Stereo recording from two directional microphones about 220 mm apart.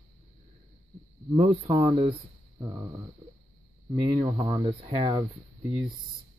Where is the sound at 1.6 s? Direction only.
15° right (ahead or behind).